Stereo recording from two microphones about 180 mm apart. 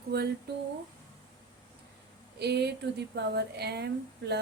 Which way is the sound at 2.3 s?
65° right (ahead or behind).